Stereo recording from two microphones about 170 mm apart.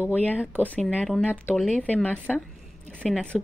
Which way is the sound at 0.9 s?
5° right (ahead or behind).